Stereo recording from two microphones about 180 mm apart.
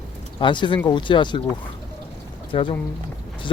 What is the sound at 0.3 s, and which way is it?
Speech, 25° left (ahead or behind).